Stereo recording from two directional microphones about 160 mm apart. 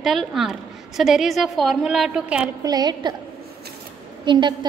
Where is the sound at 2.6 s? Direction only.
25° right (ahead or behind).